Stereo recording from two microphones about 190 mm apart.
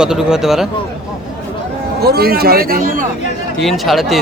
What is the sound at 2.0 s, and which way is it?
Speech, 55° right (ahead or behind).